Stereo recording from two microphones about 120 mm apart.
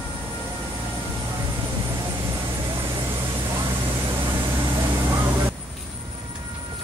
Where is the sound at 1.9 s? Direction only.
30° right (ahead or behind).